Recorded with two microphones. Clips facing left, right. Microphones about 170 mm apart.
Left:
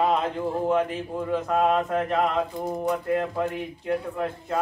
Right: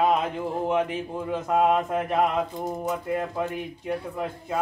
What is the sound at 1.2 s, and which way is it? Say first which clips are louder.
Speech: even; 10° right (ahead or behind).